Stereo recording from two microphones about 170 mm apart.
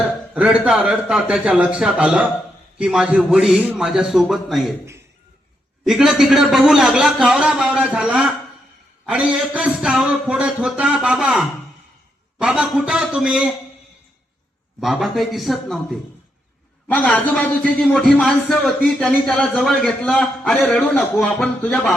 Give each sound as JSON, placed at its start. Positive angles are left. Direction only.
{"t": 0.0, "sound": "a man's voice", "side_deg": -5}
{"t": 5.8, "sound": "a man's voice", "side_deg": 0}
{"t": 14.8, "sound": "a man's voice", "side_deg": 0}